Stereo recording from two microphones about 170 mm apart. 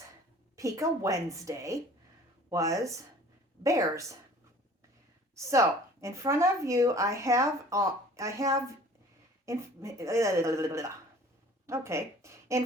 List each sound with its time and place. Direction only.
0.5 s a woman's voice: 20° right (ahead or behind)
5.3 s speech: 15° right (ahead or behind)